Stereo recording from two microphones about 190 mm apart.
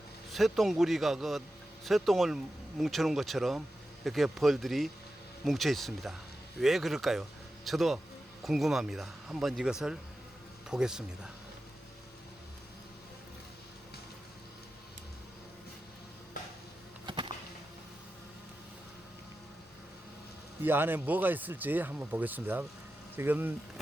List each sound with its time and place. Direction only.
0.3 s speech: centre (ahead or behind)
17.1 s a sound: 25° right (ahead or behind)
20.6 s speech: 10° right (ahead or behind)